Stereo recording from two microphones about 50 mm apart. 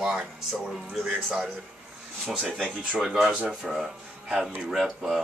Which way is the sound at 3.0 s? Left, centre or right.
Centre.